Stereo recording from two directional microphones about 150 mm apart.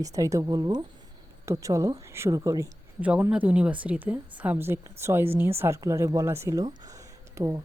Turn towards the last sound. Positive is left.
turn(degrees=-20)  # may be behind; listen again after turning